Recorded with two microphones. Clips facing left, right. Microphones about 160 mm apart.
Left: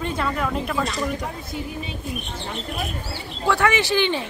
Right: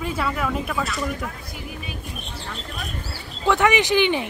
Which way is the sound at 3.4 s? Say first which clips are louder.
Right 2 dB; 20° right (ahead or behind).